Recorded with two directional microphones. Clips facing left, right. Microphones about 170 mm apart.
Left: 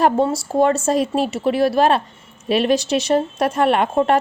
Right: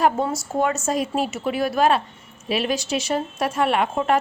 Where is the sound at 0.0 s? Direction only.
35° left (ahead or behind).